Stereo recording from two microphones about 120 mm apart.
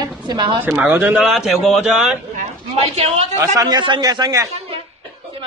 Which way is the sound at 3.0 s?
65° right (ahead or behind).